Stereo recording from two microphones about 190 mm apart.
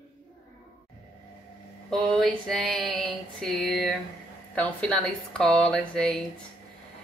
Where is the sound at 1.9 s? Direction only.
Centre (ahead or behind).